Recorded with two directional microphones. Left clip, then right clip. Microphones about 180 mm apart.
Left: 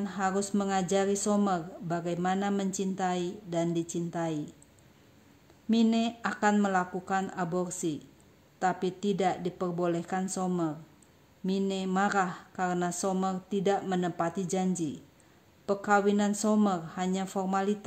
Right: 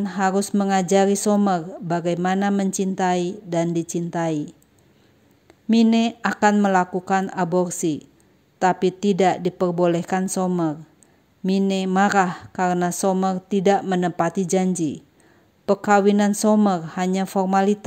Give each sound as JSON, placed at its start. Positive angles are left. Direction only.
{"t": 0.0, "sound": "speech", "side_deg": -35}
{"t": 5.7, "sound": "speech", "side_deg": -35}